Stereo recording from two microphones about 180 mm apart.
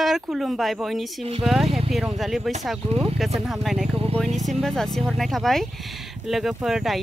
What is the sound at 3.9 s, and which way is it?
Speech, 35° right (ahead or behind).